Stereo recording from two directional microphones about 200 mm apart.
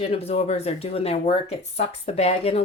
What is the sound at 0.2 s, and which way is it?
Speech, 30° left (ahead or behind).